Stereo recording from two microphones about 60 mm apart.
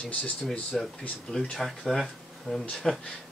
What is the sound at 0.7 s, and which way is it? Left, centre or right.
Speech, centre.